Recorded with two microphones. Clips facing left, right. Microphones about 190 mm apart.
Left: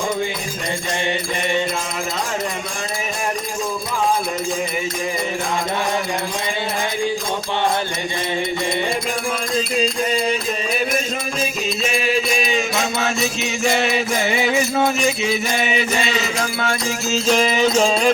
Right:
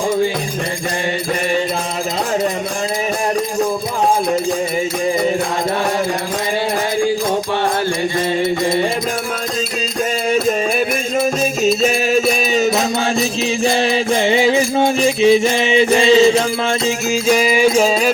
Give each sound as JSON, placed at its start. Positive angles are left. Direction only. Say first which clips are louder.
{"t": 11.6, "sound": "music", "louder": "right 8 dB", "side_deg": -45}
{"t": 17.1, "sound": "music", "louder": "right 2 dB", "side_deg": -10}